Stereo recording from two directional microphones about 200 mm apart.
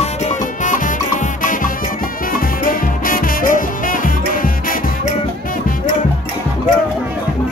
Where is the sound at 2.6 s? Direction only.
45° left (ahead or behind).